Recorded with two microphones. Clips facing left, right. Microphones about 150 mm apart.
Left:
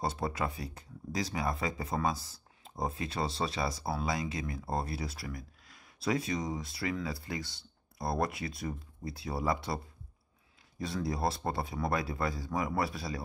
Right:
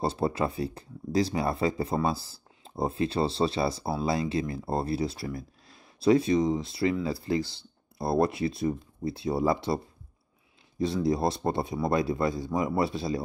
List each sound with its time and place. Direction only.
0.0 s speech: 30° right (ahead or behind)
10.8 s speech: 25° right (ahead or behind)